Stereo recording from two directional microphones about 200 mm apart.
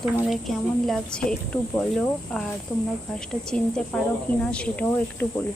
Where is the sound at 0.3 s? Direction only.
Centre (ahead or behind).